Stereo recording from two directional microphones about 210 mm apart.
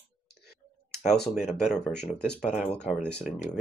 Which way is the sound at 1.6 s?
5° left (ahead or behind).